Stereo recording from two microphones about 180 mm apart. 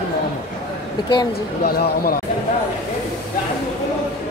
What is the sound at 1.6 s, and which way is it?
Speech, 60° left (ahead or behind).